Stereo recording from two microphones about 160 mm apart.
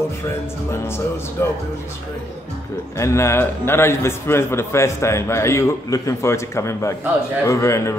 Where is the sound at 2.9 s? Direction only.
20° left (ahead or behind).